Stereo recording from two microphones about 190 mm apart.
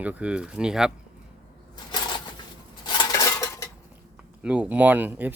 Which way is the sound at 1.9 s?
25° left (ahead or behind).